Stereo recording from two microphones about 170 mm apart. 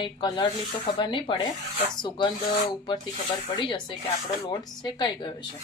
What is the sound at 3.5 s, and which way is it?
Speech, 30° left (ahead or behind).